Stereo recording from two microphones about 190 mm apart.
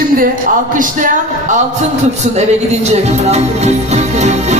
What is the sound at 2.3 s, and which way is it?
Music, 35° right (ahead or behind).